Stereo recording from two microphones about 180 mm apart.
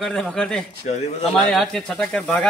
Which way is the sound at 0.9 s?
40° left (ahead or behind).